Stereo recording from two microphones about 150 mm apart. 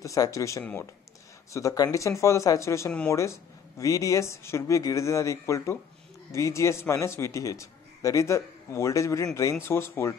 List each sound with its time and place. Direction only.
0.0 s a man's voice: 20° left (ahead or behind)